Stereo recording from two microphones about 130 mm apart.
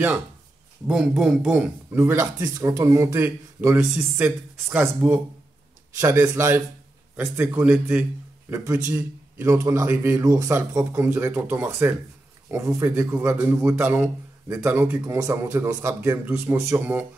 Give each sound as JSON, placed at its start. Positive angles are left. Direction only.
{"t": 0.8, "sound": "speech", "side_deg": -5}
{"t": 2.0, "sound": "a man's voice", "side_deg": -20}